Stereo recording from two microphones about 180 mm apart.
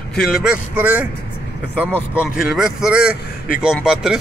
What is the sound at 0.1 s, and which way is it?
Speech, centre (ahead or behind).